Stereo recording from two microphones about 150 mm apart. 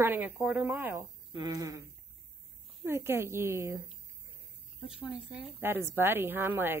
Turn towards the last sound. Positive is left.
turn(degrees=-15)  # may be behind; listen again after turning